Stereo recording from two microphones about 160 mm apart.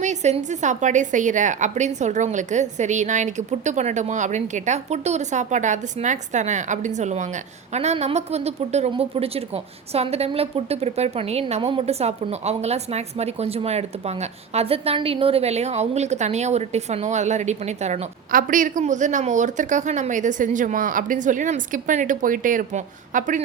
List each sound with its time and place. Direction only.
0.0 s a woman's voice: 45° right (ahead or behind)
18.3 s a woman's voice: 60° right (ahead or behind)